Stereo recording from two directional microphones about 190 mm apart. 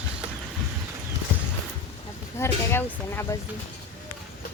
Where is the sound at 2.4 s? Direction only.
10° left (ahead or behind).